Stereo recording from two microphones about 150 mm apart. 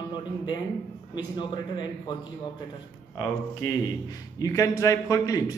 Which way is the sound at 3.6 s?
25° left (ahead or behind).